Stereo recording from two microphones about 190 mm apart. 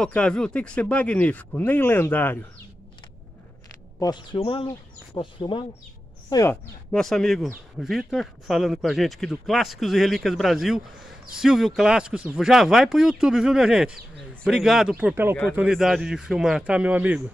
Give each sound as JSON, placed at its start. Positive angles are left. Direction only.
{"t": 0.0, "sound": "speech", "side_deg": 5}
{"t": 4.0, "sound": "speech", "side_deg": 25}
{"t": 6.3, "sound": "speech", "side_deg": 15}
{"t": 6.9, "sound": "speech", "side_deg": 0}